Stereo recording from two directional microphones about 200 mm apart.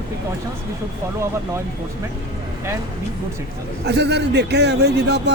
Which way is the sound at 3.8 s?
60° right (ahead or behind).